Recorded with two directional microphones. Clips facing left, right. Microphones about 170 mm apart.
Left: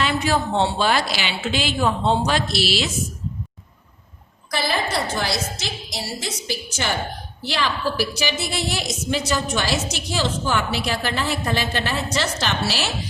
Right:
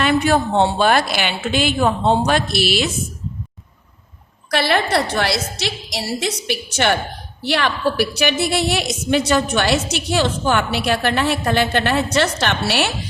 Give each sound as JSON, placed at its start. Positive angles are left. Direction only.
{"t": 0.0, "sound": "a woman's voice", "side_deg": -55}
{"t": 4.5, "sound": "a woman's voice", "side_deg": -70}